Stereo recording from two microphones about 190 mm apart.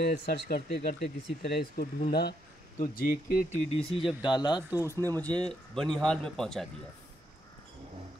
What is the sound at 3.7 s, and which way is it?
Speech, 30° left (ahead or behind).